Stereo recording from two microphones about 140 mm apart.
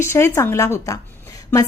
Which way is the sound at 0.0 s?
20° left (ahead or behind).